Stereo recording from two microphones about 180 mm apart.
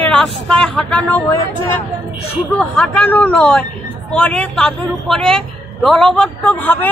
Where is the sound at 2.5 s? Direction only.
5° left (ahead or behind).